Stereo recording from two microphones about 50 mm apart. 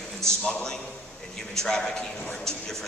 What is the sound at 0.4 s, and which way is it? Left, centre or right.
A man's voice, centre.